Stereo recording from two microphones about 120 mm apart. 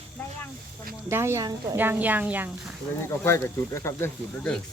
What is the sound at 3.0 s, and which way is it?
Speech, 20° left (ahead or behind).